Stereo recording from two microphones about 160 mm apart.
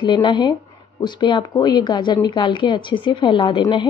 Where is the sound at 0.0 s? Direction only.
30° left (ahead or behind).